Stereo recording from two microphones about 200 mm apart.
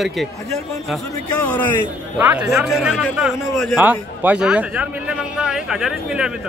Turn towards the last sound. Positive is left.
turn(degrees=-5)  # may be behind; listen again after turning